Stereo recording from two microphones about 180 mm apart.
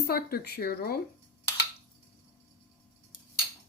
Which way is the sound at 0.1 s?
60° left (ahead or behind).